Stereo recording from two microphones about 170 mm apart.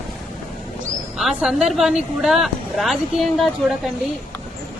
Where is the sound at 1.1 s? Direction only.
5° right (ahead or behind).